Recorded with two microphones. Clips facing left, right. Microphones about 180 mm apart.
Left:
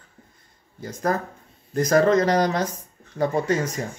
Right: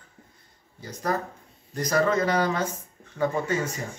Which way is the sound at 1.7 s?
45° left (ahead or behind).